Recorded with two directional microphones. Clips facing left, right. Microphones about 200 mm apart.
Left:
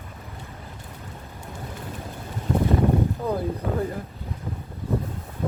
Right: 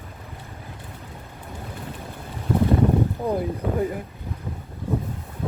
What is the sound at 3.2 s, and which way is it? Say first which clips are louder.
Speech: right 1 dB; 20° right (ahead or behind).